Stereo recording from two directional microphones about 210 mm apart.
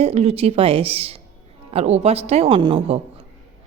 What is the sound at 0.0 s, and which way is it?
Speech, 30° right (ahead or behind).